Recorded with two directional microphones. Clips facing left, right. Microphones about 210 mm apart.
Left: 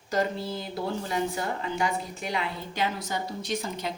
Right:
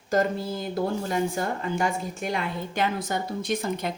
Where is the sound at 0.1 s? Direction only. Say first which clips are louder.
Right 3 dB; 50° right (ahead or behind).